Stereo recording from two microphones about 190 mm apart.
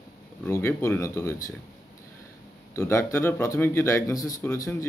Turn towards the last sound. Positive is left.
turn(degrees=15)  # may be behind; listen again after turning